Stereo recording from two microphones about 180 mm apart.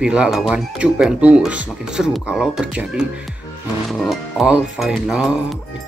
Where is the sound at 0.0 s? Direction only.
5° right (ahead or behind).